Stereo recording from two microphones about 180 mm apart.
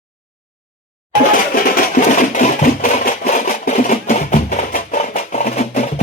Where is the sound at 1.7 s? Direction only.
45° left (ahead or behind).